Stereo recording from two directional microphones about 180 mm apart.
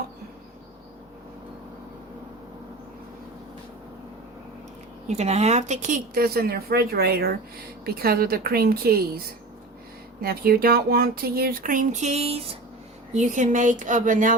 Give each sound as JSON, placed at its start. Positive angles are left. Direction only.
{"t": 5.0, "sound": "speech", "side_deg": -40}